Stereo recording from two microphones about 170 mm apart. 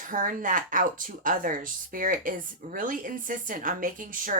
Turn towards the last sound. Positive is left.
turn(degrees=-50)  # may be behind; listen again after turning